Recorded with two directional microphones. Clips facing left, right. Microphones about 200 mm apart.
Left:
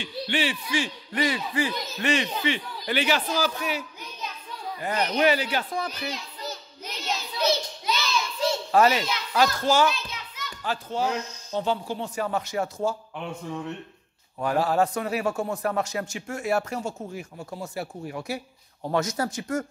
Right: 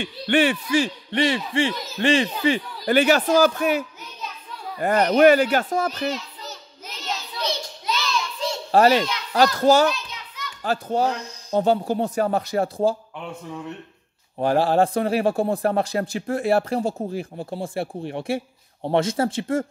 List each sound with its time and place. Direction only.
0.0 s speech: 55° right (ahead or behind)
0.7 s a man's voice: 30° right (ahead or behind); by 6.0 s 45° right (ahead or behind)
7.0 s child singing: 10° left (ahead or behind)
8.7 s a man's voice: 40° right (ahead or behind)
14.4 s a man's voice: 30° right (ahead or behind)